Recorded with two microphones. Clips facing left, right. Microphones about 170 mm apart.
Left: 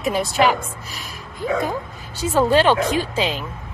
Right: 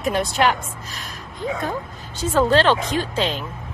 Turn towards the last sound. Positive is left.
turn(degrees=5)  # may be behind; listen again after turning